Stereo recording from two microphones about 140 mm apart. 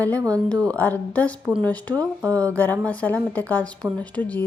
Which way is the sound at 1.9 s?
20° right (ahead or behind).